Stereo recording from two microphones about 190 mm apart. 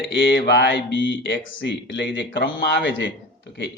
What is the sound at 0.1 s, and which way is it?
Speech, 70° left (ahead or behind).